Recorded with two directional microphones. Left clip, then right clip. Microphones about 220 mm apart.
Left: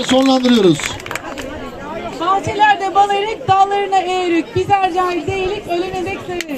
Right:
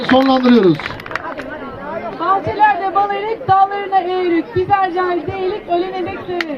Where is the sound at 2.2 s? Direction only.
40° left (ahead or behind).